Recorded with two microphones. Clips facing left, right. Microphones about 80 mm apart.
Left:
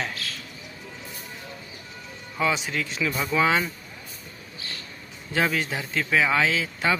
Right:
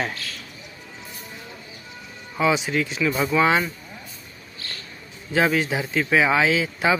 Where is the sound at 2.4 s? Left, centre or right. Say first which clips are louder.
Right 4 dB; centre.